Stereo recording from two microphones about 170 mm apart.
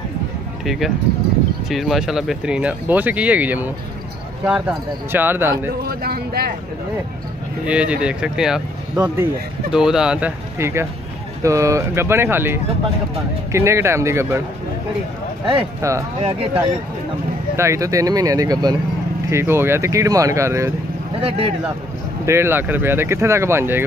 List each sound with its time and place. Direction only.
0.7 s speech: centre (ahead or behind)
5.9 s speech: 65° right (ahead or behind)
7.6 s speech: 5° right (ahead or behind)
15.4 s speech: 20° right (ahead or behind)
17.6 s speech: 15° right (ahead or behind)
21.2 s speech: 35° right (ahead or behind)
22.2 s speech: 15° right (ahead or behind)